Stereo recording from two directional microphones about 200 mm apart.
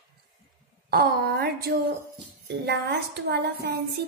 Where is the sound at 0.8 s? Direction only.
50° right (ahead or behind).